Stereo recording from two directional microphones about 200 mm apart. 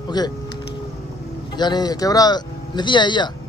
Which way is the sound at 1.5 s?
20° left (ahead or behind).